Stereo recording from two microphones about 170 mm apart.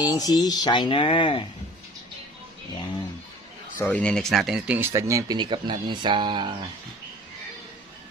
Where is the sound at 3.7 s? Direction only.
10° left (ahead or behind).